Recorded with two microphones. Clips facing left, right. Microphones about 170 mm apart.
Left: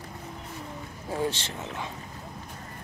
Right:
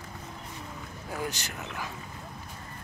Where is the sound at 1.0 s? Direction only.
30° left (ahead or behind).